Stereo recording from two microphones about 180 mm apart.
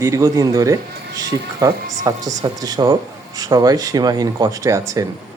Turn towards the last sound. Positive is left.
turn(degrees=-15)  # may be behind; listen again after turning